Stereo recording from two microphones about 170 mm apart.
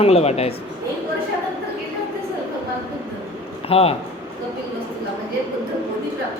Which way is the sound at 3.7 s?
35° left (ahead or behind).